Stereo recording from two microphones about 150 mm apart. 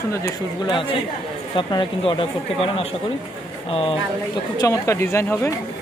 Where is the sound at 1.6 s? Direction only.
30° left (ahead or behind).